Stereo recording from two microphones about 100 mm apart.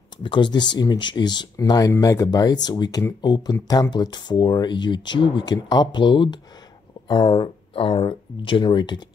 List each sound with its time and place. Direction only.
0.2 s speech: 55° left (ahead or behind)
1.6 s speech: 35° left (ahead or behind)